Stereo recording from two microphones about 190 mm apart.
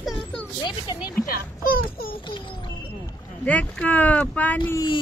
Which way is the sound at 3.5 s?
10° left (ahead or behind).